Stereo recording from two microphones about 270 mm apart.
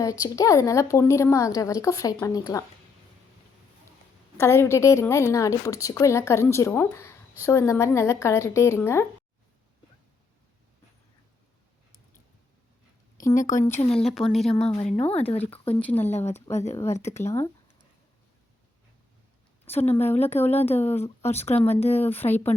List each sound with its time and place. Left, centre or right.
0.0 s a woman's voice: centre
4.4 s a woman's voice: centre
13.5 s speech: centre
15.4 s speech: left
15.8 s speech: centre
16.0 s speech: left
16.7 s a woman's voice: centre
19.8 s a woman's voice: centre
20.1 s speech: left
21.5 s a woman's voice: centre
21.8 s speech: left
22.1 s a woman's voice: centre